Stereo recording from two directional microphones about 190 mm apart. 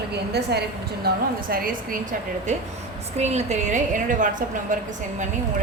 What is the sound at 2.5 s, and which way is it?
Speech, 40° right (ahead or behind).